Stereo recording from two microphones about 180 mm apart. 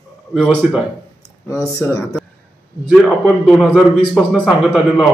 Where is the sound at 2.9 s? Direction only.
Centre (ahead or behind).